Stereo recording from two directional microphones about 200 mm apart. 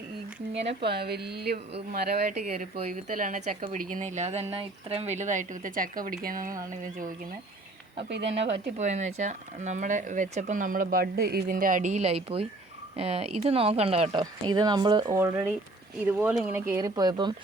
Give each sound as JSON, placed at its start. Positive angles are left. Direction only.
{"t": 0.8, "sound": "speech", "side_deg": -55}
{"t": 2.7, "sound": "a woman's voice", "side_deg": -35}
{"t": 7.9, "sound": "speech", "side_deg": -60}
{"t": 8.8, "sound": "a woman's voice", "side_deg": -35}